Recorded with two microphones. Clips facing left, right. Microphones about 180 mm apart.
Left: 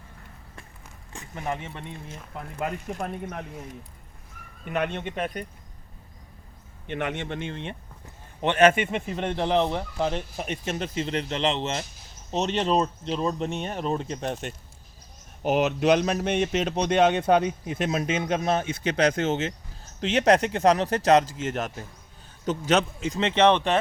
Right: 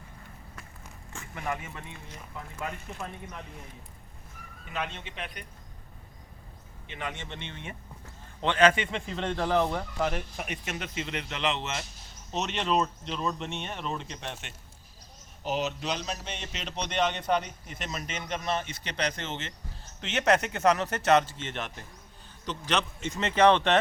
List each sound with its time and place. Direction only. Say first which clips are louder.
1.1 s speech: left 3 dB; 20° left (ahead or behind)
2.3 s a man's voice: left 6 dB; 55° left (ahead or behind)
4.6 s a man's voice: left 8 dB; 60° left (ahead or behind)
6.8 s a man's voice: left 8 dB; 60° left (ahead or behind)
7.3 s speech: left 9 dB; 45° left (ahead or behind)
8.0 s a sound: left 4 dB; 20° left (ahead or behind)
8.9 s speech: left 4 dB; 15° left (ahead or behind); by 14.5 s 40° left (ahead or behind)
15.4 s a man's voice: left 10 dB; 55° left (ahead or behind); by 23.7 s 15° left (ahead or behind)